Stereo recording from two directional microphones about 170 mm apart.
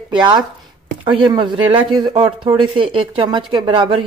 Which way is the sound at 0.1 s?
25° right (ahead or behind).